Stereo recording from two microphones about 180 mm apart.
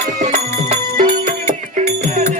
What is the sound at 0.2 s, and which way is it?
Music, 40° right (ahead or behind).